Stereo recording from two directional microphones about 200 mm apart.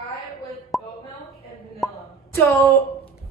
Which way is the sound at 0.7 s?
Centre (ahead or behind).